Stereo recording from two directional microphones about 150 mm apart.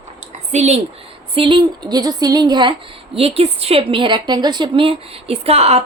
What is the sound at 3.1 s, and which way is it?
A woman's voice, 40° right (ahead or behind).